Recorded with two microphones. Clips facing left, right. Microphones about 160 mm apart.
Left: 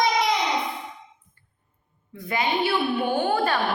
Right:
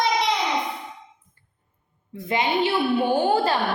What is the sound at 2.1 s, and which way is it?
A woman's voice, 25° right (ahead or behind).